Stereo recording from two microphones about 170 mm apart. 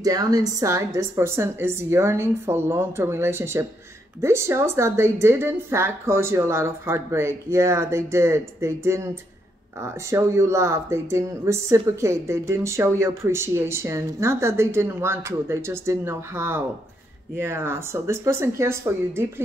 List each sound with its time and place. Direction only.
0.0 s speech: 20° right (ahead or behind)